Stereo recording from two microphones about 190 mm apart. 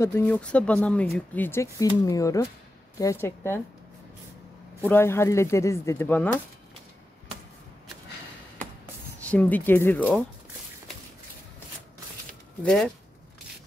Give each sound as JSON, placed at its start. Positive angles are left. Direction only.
{"t": 0.0, "sound": "speech", "side_deg": 10}
{"t": 4.8, "sound": "speech", "side_deg": 10}
{"t": 9.2, "sound": "speech", "side_deg": 5}
{"t": 12.6, "sound": "speech", "side_deg": 5}